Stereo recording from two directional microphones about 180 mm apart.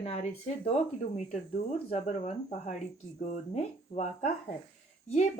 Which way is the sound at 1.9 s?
40° left (ahead or behind).